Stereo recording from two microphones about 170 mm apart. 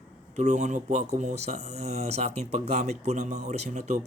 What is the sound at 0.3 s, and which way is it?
Speech, 45° right (ahead or behind).